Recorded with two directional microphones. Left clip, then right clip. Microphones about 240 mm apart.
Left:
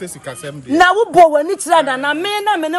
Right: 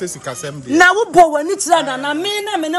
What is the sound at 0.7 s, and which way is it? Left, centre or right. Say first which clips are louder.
Speech: even; left.